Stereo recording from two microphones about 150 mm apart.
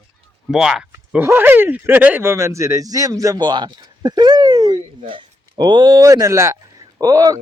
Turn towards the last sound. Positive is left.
turn(degrees=-25)  # may be behind; listen again after turning